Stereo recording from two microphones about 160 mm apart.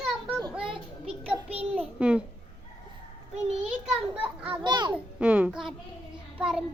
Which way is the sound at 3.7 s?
5° right (ahead or behind).